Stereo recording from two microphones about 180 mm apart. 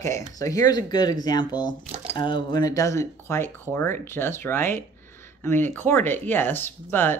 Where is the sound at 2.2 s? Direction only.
25° left (ahead or behind).